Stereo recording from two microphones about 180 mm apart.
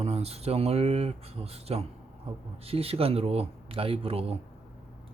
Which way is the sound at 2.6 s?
35° right (ahead or behind).